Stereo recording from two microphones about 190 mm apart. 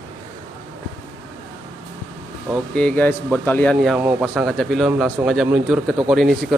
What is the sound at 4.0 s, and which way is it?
Speech, 10° right (ahead or behind).